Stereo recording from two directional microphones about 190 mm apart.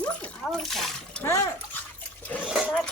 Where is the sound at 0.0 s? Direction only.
5° left (ahead or behind).